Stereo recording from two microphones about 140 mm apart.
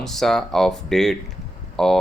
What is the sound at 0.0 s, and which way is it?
Speech, centre (ahead or behind).